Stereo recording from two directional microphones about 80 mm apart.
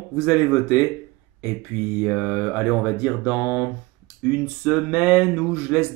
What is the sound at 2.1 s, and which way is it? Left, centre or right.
Speech, centre.